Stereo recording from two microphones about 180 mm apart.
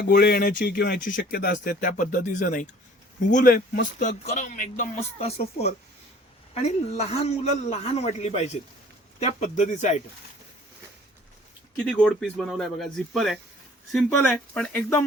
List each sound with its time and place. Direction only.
0.1 s speech: 60° left (ahead or behind)
0.9 s a man's voice: 50° left (ahead or behind)
11.9 s speech: 5° left (ahead or behind)